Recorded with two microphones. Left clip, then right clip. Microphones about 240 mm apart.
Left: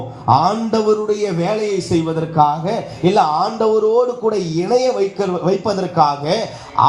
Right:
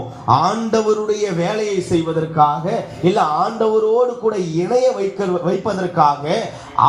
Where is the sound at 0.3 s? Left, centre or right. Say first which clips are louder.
Left 1 dB; left.